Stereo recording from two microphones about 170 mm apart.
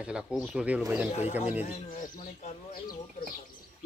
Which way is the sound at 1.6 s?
50° left (ahead or behind).